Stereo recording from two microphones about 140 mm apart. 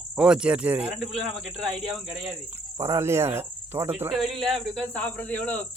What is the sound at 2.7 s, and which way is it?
Cricket, 20° right (ahead or behind).